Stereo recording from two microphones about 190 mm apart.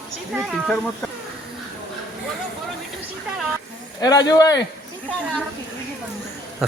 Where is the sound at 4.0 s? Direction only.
20° left (ahead or behind).